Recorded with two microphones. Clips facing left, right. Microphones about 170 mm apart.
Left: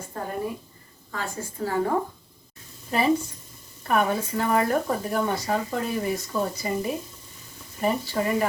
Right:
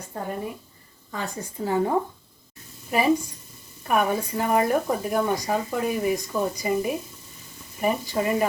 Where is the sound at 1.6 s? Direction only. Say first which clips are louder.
Right 2 dB; 15° right (ahead or behind).